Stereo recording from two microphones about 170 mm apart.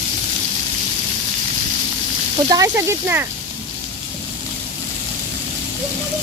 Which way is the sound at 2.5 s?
20° right (ahead or behind).